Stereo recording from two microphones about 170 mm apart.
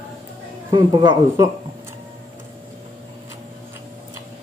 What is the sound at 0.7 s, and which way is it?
Speech, 25° right (ahead or behind).